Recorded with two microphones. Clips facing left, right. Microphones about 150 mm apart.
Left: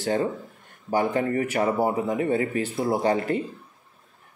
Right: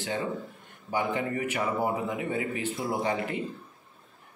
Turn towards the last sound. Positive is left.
turn(degrees=40)  # may be behind; listen again after turning